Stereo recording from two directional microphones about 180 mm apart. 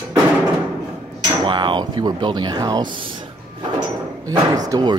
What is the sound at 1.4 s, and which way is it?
Speech, 25° right (ahead or behind).